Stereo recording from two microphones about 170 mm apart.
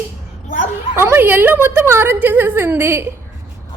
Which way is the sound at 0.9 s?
15° right (ahead or behind).